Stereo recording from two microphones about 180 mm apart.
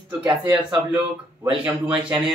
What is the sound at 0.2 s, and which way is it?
Speech, 20° right (ahead or behind).